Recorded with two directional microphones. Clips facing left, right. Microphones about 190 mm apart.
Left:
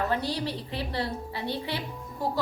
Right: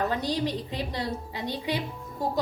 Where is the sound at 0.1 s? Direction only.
15° right (ahead or behind).